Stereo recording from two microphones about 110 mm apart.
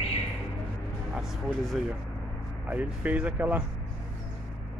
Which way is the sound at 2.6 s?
15° right (ahead or behind).